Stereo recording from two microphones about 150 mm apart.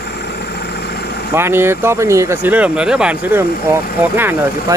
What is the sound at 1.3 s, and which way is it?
Speech, 15° right (ahead or behind).